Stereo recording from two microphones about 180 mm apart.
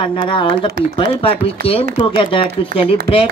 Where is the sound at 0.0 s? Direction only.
30° left (ahead or behind).